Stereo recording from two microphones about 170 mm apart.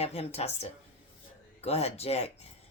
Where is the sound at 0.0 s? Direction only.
35° left (ahead or behind).